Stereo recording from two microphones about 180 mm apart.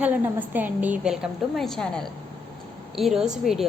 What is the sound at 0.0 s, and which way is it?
A woman's voice, 10° right (ahead or behind).